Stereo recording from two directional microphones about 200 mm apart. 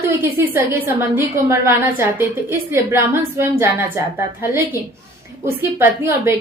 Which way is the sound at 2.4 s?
10° right (ahead or behind).